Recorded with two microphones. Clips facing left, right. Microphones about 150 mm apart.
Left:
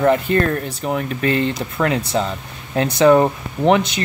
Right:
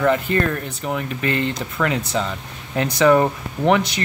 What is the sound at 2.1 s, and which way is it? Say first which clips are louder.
Speech: left 3 dB; 35° left (ahead or behind).